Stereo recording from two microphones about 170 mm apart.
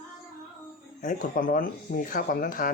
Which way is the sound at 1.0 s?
55° left (ahead or behind).